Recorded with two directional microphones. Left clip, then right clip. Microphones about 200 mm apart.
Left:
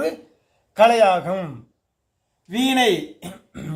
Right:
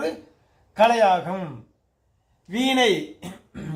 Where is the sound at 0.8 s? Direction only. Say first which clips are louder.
Left 3 dB; 60° left (ahead or behind).